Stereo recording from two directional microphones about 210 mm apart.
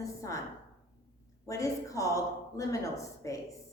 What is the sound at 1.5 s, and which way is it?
A woman's voice, 15° left (ahead or behind).